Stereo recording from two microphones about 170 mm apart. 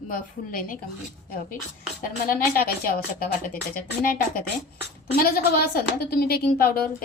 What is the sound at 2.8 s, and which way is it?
A woman's voice, 65° left (ahead or behind).